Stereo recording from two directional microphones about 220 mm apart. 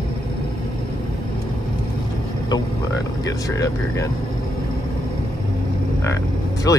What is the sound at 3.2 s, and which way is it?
Speech, 15° left (ahead or behind).